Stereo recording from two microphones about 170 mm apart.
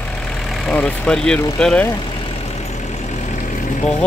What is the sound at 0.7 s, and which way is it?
Speech, 5° left (ahead or behind).